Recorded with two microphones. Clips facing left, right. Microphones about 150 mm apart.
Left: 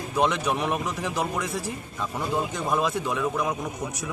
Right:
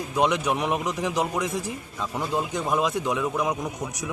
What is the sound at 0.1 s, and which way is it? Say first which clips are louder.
A man's voice: right 1 dB; 15° right (ahead or behind).